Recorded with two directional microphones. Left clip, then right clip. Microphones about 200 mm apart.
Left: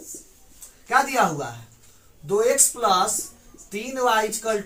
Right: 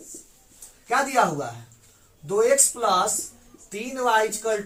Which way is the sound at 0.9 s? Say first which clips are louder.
Left 1 dB; 20° right (ahead or behind).